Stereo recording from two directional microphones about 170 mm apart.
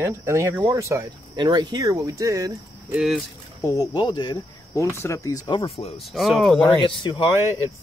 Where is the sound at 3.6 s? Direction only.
25° left (ahead or behind).